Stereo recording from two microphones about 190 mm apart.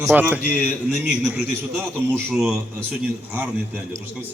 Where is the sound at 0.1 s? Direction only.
10° right (ahead or behind).